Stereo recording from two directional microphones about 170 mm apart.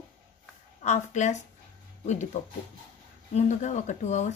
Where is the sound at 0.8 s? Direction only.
45° left (ahead or behind).